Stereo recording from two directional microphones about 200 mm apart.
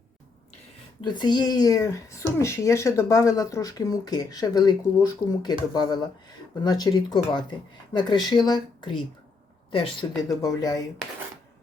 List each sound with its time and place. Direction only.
1.0 s speech: 20° left (ahead or behind)